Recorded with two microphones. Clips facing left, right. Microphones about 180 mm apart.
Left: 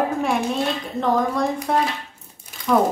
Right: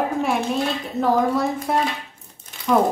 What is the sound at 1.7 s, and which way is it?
A woman's voice, 5° right (ahead or behind).